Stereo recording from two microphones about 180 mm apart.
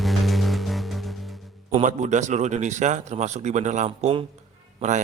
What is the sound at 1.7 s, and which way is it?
A man's voice, 40° right (ahead or behind).